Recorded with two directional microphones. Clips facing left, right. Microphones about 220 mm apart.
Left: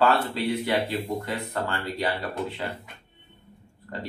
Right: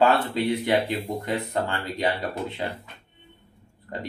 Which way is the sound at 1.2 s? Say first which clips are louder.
Right 3 dB; 20° right (ahead or behind).